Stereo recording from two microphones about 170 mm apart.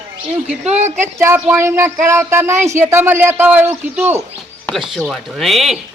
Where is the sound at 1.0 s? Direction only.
15° right (ahead or behind).